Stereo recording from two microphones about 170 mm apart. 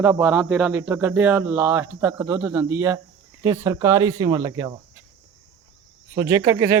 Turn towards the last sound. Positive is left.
turn(degrees=-15)  # may be behind; listen again after turning